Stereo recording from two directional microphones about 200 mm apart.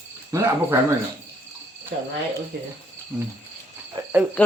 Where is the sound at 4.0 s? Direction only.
20° right (ahead or behind).